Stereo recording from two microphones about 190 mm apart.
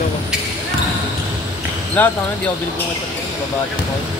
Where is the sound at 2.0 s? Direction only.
10° left (ahead or behind).